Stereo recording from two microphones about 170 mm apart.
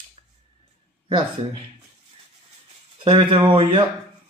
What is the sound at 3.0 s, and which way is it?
Speech, 30° right (ahead or behind).